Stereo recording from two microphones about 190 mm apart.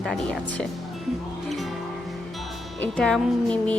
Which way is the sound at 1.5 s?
Centre (ahead or behind).